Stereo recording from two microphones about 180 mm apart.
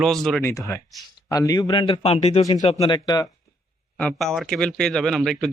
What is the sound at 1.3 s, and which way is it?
A man's voice, 20° left (ahead or behind).